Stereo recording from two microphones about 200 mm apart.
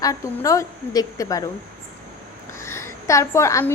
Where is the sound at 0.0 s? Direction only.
15° left (ahead or behind).